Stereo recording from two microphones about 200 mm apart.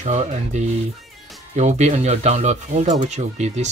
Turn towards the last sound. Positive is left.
turn(degrees=-35)  # may be behind; listen again after turning